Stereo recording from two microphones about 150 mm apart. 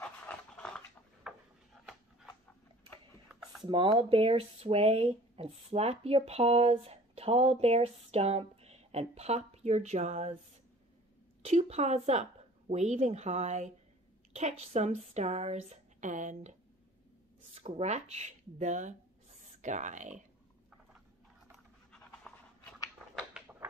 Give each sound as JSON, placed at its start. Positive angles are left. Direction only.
{"t": 0.6, "sound": "a sound", "side_deg": 5}
{"t": 1.3, "sound": "a sound", "side_deg": -5}
{"t": 3.3, "sound": "computer keyboard", "side_deg": -5}
{"t": 3.6, "sound": "speech", "side_deg": -30}
{"t": 11.4, "sound": "speech", "side_deg": -45}
{"t": 17.6, "sound": "speech", "side_deg": -45}
{"t": 21.5, "sound": "pant", "side_deg": 5}